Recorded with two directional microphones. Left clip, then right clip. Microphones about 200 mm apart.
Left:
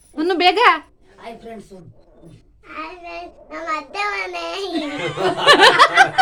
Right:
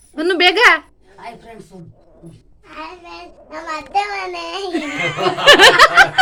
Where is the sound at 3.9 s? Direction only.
25° left (ahead or behind).